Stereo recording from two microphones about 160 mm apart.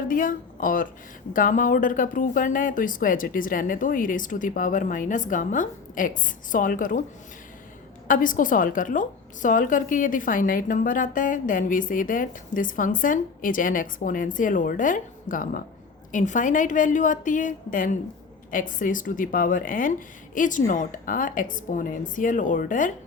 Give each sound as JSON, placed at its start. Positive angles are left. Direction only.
{"t": 0.1, "sound": "a woman's voice", "side_deg": 60}
{"t": 8.0, "sound": "a woman's voice", "side_deg": 55}